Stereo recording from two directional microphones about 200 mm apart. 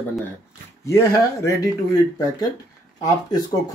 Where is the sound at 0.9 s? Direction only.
15° left (ahead or behind).